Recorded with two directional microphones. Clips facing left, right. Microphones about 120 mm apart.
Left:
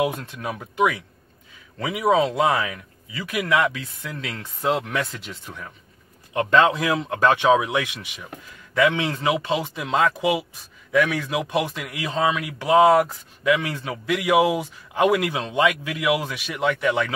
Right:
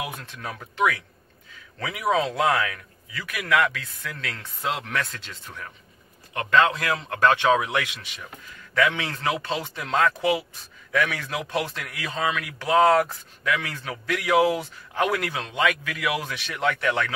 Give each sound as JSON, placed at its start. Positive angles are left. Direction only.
{"t": 0.3, "sound": "a man's voice", "side_deg": 15}
{"t": 6.3, "sound": "a man's voice", "side_deg": 25}
{"t": 16.3, "sound": "a man's voice", "side_deg": 10}